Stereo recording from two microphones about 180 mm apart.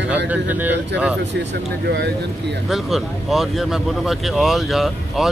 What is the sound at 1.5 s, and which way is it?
Speech, 70° right (ahead or behind).